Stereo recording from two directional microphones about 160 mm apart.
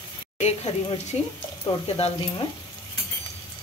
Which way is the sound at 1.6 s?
30° left (ahead or behind).